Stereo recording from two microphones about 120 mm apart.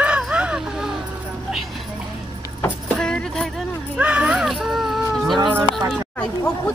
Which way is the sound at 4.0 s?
10° right (ahead or behind).